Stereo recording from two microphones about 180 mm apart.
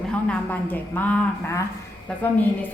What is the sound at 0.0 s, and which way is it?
A woman's voice, 5° left (ahead or behind).